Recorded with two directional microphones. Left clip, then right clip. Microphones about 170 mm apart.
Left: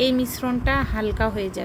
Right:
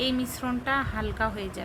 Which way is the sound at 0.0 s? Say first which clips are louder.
Left 7 dB; 15° left (ahead or behind).